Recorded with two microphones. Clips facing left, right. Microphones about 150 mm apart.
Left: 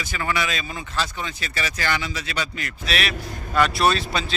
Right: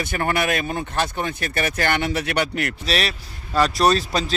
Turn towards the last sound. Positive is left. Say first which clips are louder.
# right 3 dB
turn(degrees=-40)  # may be behind; listen again after turning